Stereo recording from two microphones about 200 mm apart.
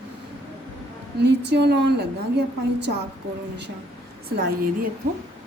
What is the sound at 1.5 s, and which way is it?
Speech, 55° right (ahead or behind).